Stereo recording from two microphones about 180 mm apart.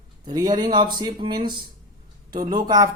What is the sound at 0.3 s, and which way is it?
Speech, 20° right (ahead or behind).